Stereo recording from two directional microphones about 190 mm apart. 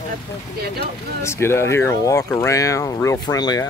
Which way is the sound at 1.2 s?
15° left (ahead or behind).